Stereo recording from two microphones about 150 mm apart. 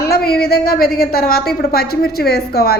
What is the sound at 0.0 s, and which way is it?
A woman's voice, 90° left.